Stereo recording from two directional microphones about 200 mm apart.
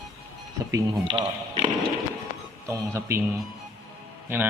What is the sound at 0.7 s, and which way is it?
Speech, 20° right (ahead or behind).